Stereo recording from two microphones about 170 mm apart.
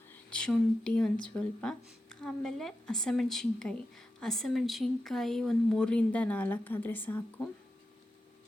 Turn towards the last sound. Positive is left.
turn(degrees=10)  # may be behind; listen again after turning